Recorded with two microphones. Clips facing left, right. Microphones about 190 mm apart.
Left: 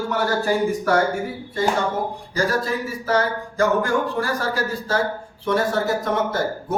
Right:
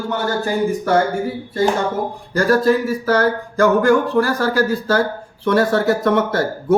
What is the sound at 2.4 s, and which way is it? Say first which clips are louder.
A man's voice: right 8 dB; 65° right (ahead or behind).